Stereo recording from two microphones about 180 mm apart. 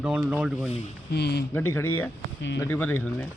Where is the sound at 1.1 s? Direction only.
65° left (ahead or behind).